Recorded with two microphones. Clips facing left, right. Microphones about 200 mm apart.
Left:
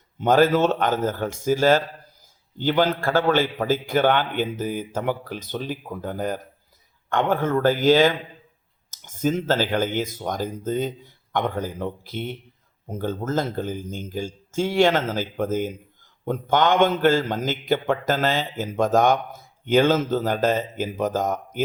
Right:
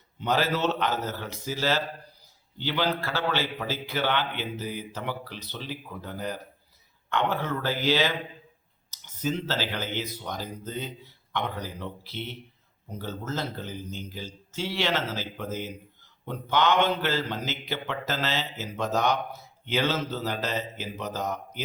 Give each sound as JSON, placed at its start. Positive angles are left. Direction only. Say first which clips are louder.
{"t": 0.2, "sound": "speech", "louder": "left 9 dB", "side_deg": 50}